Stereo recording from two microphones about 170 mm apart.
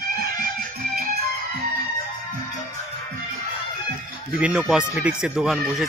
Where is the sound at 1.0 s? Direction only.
65° right (ahead or behind).